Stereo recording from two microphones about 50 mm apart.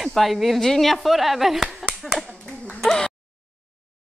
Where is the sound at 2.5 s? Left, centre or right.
Centre.